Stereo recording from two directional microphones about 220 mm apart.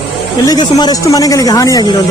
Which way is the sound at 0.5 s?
15° left (ahead or behind).